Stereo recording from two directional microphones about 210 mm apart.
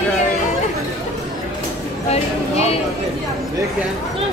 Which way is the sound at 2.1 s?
30° left (ahead or behind).